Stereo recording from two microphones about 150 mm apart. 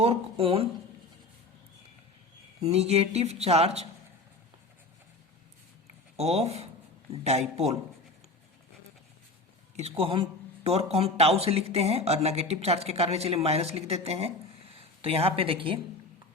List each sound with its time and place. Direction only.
0.0 s speech: 40° right (ahead or behind)
2.6 s speech: 45° right (ahead or behind)
6.1 s speech: 45° right (ahead or behind)
10.0 s speech: 40° right (ahead or behind)